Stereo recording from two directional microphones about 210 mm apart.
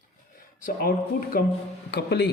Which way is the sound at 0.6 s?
40° left (ahead or behind).